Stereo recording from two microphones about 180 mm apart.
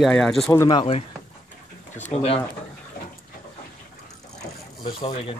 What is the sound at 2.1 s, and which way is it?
Speech, 35° left (ahead or behind).